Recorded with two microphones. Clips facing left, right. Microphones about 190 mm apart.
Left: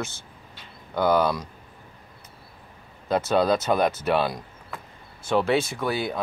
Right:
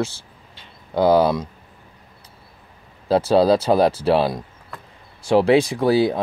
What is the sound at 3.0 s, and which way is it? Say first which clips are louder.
Speech: right 6 dB; 30° right (ahead or behind).